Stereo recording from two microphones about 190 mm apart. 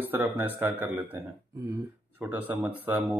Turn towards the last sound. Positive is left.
turn(degrees=-10)  # may be behind; listen again after turning